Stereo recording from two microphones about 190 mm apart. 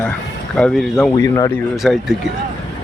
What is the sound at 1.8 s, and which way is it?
Speech, centre (ahead or behind).